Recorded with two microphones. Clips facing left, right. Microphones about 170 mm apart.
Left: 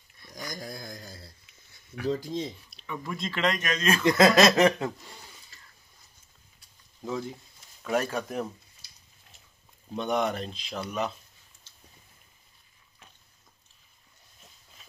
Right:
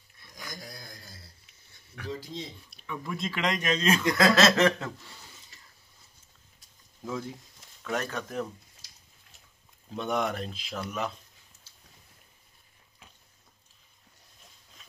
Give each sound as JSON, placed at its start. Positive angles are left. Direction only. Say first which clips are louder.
{"t": 0.4, "sound": "a sound", "louder": "left 6 dB", "side_deg": 45}
{"t": 2.0, "sound": "speech", "louder": "left 8 dB", "side_deg": 50}
{"t": 2.9, "sound": "speech", "louder": "even", "side_deg": 0}
{"t": 3.4, "sound": "speech", "louder": "even", "side_deg": -25}
{"t": 4.0, "sound": "speech", "louder": "left 5 dB", "side_deg": 20}
{"t": 5.5, "sound": "a sound", "louder": "left 1 dB", "side_deg": -20}
{"t": 7.1, "sound": "speech", "louder": "left 2 dB", "side_deg": 0}
{"t": 9.9, "sound": "speech", "louder": "left 2 dB", "side_deg": 0}